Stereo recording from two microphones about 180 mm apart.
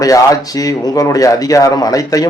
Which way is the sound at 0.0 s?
20° left (ahead or behind).